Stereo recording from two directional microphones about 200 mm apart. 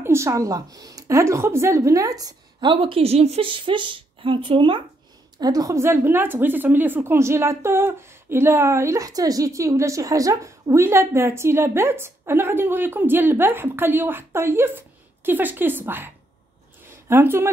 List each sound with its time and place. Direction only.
0.0 s a woman's voice: 15° right (ahead or behind)
17.1 s a woman's voice: 10° right (ahead or behind)